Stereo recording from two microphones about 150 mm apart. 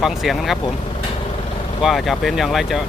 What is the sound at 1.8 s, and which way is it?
Speech, centre (ahead or behind).